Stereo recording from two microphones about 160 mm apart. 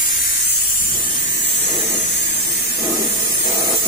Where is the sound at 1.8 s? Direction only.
40° left (ahead or behind).